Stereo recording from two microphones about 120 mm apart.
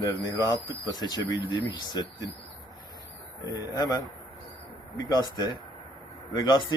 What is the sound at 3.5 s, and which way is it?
A man's voice, 35° left (ahead or behind).